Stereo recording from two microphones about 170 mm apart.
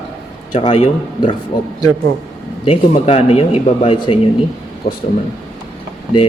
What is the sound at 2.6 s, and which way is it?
A man's voice, 35° left (ahead or behind).